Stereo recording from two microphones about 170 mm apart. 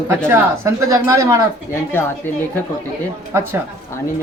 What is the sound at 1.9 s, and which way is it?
Speech, 10° left (ahead or behind).